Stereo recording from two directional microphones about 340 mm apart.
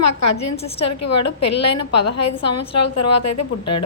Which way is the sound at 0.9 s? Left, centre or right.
Left.